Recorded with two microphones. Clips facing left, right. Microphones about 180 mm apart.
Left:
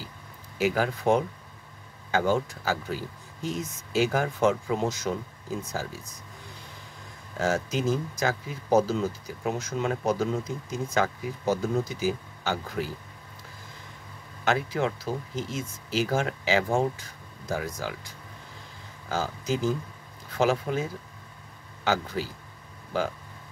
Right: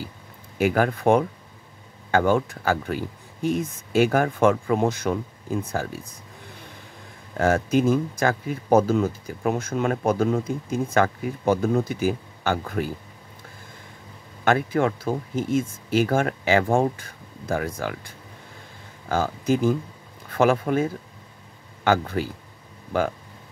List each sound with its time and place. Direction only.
0.6 s speech: 55° right (ahead or behind)
7.3 s speech: 55° right (ahead or behind)
14.4 s speech: 50° right (ahead or behind)